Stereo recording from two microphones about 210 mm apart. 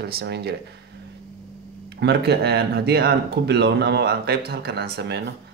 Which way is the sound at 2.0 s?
50° right (ahead or behind).